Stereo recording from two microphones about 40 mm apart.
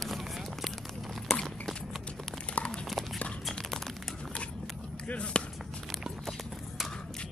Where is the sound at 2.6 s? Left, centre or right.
Left.